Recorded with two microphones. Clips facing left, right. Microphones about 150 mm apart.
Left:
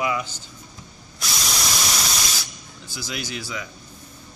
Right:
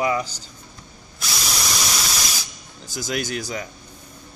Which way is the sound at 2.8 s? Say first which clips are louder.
Right 6 dB; 45° right (ahead or behind).